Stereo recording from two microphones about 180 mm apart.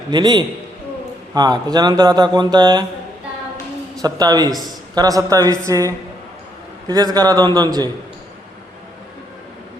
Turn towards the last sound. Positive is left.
turn(degrees=-25)  # may be behind; listen again after turning